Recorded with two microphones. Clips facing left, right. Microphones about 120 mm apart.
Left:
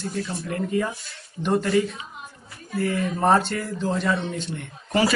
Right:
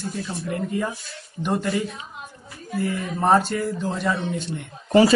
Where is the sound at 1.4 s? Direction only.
5° right (ahead or behind).